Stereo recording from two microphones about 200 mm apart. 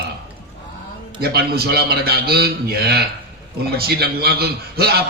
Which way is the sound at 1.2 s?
50° right (ahead or behind).